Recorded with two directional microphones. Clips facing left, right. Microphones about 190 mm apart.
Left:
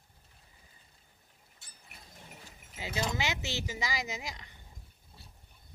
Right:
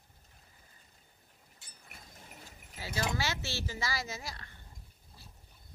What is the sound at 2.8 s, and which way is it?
Speech, 20° left (ahead or behind).